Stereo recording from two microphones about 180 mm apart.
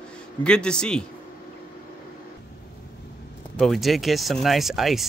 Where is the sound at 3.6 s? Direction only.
Centre (ahead or behind).